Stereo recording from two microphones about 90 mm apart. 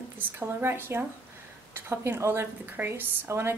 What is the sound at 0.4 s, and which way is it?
A woman's voice, 25° right (ahead or behind).